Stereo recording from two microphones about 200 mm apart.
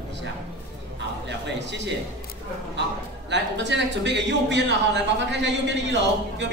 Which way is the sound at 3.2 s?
60° right (ahead or behind).